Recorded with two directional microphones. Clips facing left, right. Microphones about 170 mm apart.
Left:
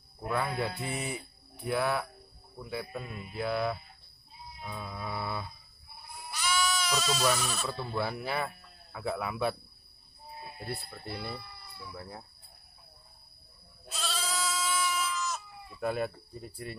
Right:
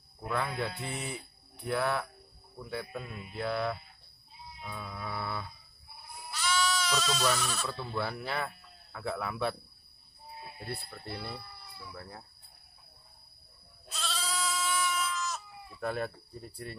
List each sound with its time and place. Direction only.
0.3 s speech: 10° left (ahead or behind)
10.7 s speech: 5° left (ahead or behind)
11.9 s speech: 20° left (ahead or behind)
13.8 s goat: 5° left (ahead or behind)